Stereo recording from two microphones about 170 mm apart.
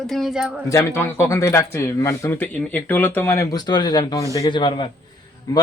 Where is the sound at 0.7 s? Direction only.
15° left (ahead or behind).